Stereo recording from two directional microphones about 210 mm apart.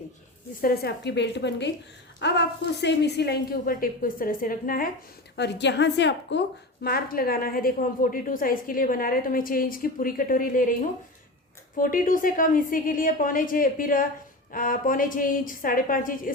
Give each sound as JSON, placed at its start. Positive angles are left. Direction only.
{"t": 0.6, "sound": "a woman's voice", "side_deg": 45}
{"t": 5.4, "sound": "a woman's voice", "side_deg": 55}
{"t": 6.8, "sound": "a woman's voice", "side_deg": 45}